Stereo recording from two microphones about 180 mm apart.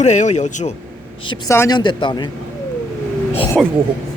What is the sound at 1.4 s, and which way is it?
Speech, 15° left (ahead or behind).